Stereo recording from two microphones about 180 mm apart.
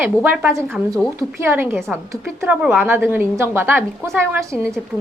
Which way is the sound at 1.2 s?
15° right (ahead or behind).